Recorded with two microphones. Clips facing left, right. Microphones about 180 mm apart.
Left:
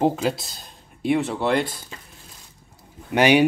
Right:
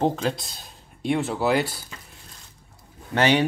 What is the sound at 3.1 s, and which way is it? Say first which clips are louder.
Speech: left 4 dB; 15° left (ahead or behind).